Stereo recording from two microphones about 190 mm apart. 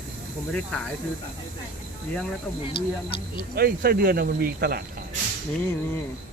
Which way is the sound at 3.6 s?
50° right (ahead or behind).